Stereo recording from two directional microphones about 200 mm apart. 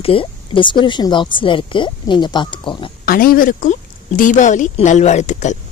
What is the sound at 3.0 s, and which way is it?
Speech, 45° left (ahead or behind).